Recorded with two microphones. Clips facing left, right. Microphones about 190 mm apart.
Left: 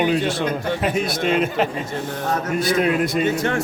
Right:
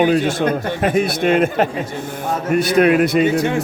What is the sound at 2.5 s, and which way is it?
Speech, 70° right (ahead or behind).